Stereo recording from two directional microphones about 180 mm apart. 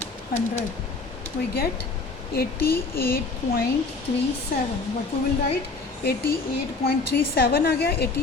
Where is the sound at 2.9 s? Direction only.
55° left (ahead or behind).